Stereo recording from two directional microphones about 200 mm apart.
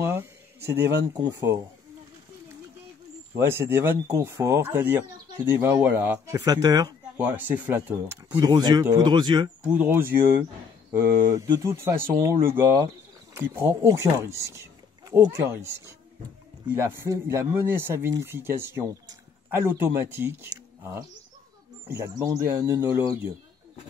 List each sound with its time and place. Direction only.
1.2 s speech: 10° right (ahead or behind)
3.3 s speech: 10° right (ahead or behind)
7.2 s speech: 10° right (ahead or behind)
8.4 s speech: 20° right (ahead or behind)
9.7 s speech: 10° right (ahead or behind)
16.8 s speech: 15° right (ahead or behind)
21.8 s speech: 15° right (ahead or behind)